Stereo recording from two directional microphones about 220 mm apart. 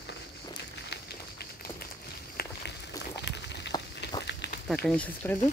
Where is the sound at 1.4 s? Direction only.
45° left (ahead or behind).